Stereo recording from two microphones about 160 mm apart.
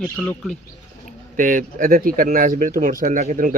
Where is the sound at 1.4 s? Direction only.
55° right (ahead or behind).